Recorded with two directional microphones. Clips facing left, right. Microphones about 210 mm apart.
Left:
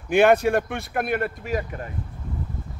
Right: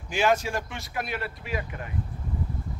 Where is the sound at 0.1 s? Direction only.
60° left (ahead or behind).